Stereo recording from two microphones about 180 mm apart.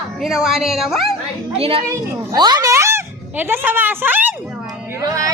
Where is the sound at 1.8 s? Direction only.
20° right (ahead or behind).